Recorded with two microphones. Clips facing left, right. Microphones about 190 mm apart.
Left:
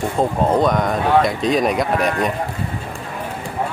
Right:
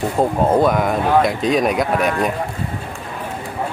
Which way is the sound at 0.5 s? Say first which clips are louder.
Right 1 dB; 5° right (ahead or behind).